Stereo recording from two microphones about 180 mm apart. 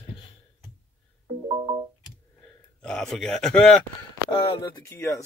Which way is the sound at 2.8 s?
5° left (ahead or behind).